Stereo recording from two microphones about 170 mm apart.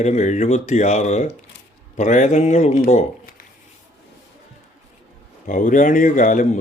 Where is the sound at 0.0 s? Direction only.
45° left (ahead or behind).